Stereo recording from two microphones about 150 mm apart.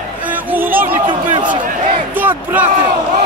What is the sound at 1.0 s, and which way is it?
Speech, 30° right (ahead or behind).